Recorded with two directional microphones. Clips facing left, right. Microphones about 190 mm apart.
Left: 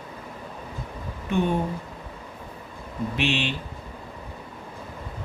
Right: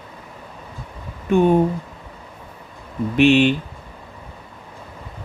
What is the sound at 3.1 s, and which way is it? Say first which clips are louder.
Speech: right 13 dB; 50° right (ahead or behind).